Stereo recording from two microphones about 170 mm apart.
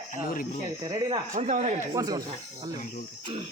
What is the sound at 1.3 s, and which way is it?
Speech, 45° right (ahead or behind).